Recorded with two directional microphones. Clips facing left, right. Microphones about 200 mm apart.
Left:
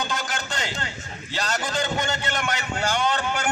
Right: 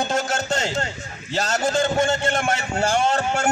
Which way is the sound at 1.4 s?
25° right (ahead or behind).